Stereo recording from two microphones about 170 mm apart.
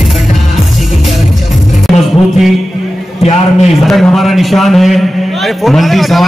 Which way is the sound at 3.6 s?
Centre (ahead or behind).